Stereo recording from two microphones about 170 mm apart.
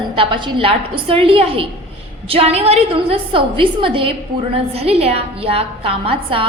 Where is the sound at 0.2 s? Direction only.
30° right (ahead or behind).